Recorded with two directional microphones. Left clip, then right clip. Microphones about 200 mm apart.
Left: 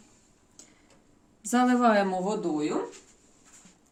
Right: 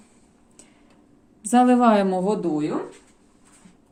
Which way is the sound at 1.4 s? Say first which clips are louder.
Right 6 dB; 20° right (ahead or behind).